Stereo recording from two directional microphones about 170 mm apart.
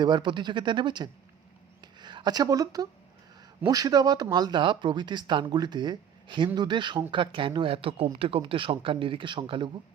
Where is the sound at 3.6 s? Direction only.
20° right (ahead or behind).